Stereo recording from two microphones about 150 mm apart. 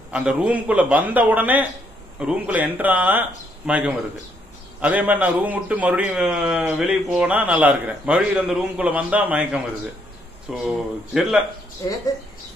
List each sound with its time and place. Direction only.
0.1 s a man's voice: 5° right (ahead or behind)
11.8 s speech: 20° left (ahead or behind)